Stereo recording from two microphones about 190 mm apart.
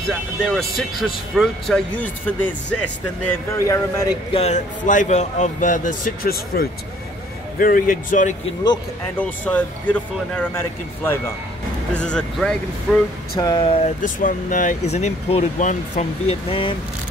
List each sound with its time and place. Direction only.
0.4 s speech: centre (ahead or behind)
4.3 s speech: 35° left (ahead or behind)
9.2 s speech: 5° left (ahead or behind)
11.9 s speech: 5° left (ahead or behind)
13.4 s speech: 20° left (ahead or behind)
14.0 s speech: 45° left (ahead or behind)